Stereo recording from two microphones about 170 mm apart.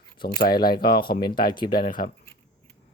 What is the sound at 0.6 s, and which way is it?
Speech, 60° left (ahead or behind).